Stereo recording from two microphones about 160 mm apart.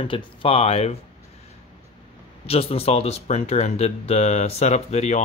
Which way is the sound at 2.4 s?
35° left (ahead or behind).